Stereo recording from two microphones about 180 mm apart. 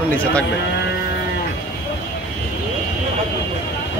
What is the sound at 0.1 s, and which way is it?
Speech, 5° left (ahead or behind).